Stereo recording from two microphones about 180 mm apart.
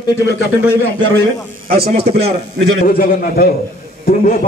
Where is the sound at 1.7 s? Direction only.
55° right (ahead or behind).